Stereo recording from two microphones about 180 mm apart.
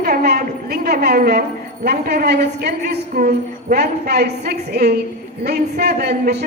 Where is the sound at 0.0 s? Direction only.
60° right (ahead or behind).